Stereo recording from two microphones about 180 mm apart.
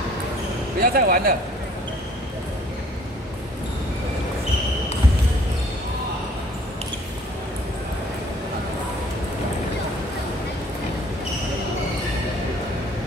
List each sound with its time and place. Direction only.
0.7 s speech: 55° right (ahead or behind)